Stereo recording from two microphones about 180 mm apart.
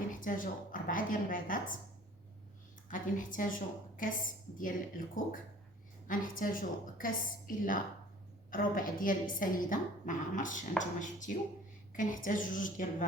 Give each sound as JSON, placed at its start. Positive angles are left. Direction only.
{"t": 0.1, "sound": "a woman's voice", "side_deg": 50}
{"t": 2.9, "sound": "a woman's voice", "side_deg": 50}
{"t": 4.5, "sound": "a woman's voice", "side_deg": 50}